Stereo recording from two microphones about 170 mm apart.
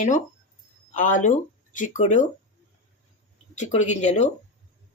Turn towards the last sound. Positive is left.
turn(degrees=45)  # may be behind; listen again after turning